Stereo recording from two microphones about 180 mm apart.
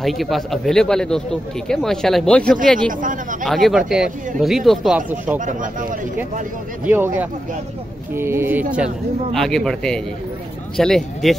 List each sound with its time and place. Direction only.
0.0 s a man's voice: centre (ahead or behind)
2.9 s speech: 45° right (ahead or behind)
3.4 s a man's voice: centre (ahead or behind)
5.4 s speech: 45° right (ahead or behind)
6.9 s speech: 10° right (ahead or behind)
8.7 s a man's voice: centre (ahead or behind)